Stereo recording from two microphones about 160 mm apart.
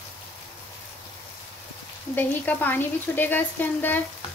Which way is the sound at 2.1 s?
10° left (ahead or behind).